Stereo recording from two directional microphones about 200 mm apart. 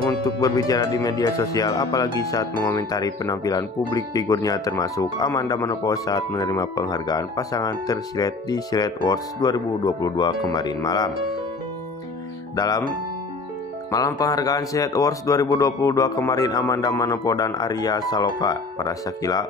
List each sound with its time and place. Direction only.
0.0 s speech: 20° left (ahead or behind)
12.5 s speech: 20° left (ahead or behind)
13.9 s speech: 15° left (ahead or behind)